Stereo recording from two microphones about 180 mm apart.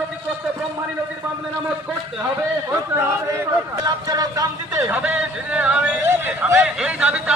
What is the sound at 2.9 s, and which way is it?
Speech, 15° right (ahead or behind).